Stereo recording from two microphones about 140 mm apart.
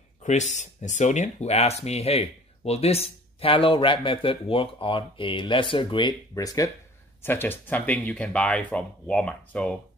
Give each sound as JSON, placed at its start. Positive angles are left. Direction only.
{"t": 0.2, "sound": "speech", "side_deg": 55}